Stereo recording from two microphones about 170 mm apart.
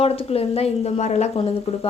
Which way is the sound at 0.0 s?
35° left (ahead or behind).